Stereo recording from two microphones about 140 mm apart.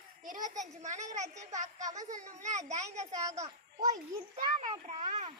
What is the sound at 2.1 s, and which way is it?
Speech, 65° right (ahead or behind).